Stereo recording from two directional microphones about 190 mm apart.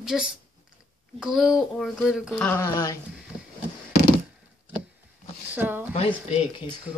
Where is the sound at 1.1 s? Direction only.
Centre (ahead or behind).